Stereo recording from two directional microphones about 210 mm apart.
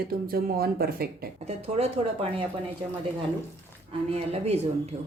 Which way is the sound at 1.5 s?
30° right (ahead or behind).